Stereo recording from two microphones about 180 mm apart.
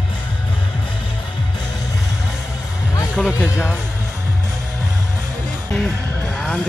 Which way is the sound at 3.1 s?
Centre (ahead or behind).